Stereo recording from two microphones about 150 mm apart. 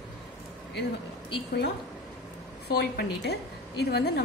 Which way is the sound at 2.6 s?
90° left.